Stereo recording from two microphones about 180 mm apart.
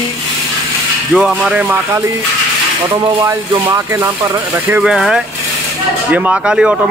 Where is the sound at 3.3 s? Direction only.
15° right (ahead or behind).